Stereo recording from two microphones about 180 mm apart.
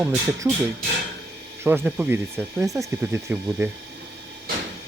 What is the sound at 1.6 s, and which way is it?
Speech, 10° right (ahead or behind).